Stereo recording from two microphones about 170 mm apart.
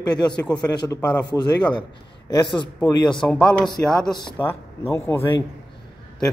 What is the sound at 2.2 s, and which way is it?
Speech, 25° left (ahead or behind).